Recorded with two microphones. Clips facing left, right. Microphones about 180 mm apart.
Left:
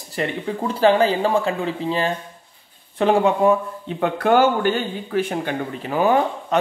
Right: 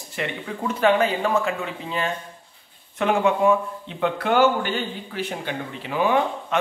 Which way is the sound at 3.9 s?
45° left (ahead or behind).